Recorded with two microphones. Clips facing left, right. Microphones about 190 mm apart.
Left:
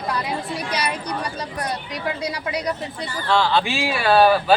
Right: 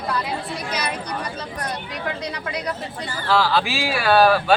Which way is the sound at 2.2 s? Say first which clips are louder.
Left 3 dB; 10° left (ahead or behind).